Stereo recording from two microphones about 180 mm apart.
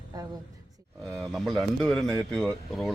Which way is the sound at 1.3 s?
Centre (ahead or behind).